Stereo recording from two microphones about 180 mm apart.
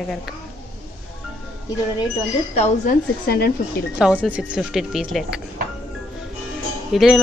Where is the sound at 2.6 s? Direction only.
55° left (ahead or behind).